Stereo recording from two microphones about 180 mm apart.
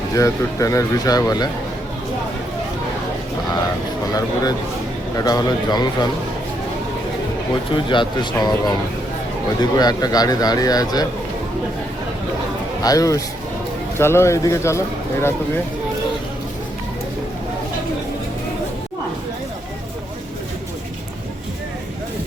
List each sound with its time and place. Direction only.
0.1 s speech: 15° left (ahead or behind)
5.1 s speech: 20° left (ahead or behind)
7.7 s speech: 25° left (ahead or behind)
12.8 s speech: 20° left (ahead or behind)